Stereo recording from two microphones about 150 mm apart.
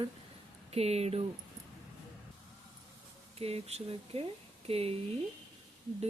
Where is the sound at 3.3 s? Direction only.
40° right (ahead or behind).